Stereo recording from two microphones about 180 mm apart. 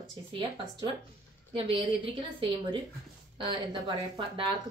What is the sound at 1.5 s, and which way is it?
Speech, 30° right (ahead or behind).